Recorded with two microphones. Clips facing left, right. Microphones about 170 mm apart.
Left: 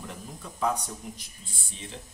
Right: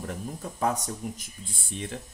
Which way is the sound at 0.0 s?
45° right (ahead or behind).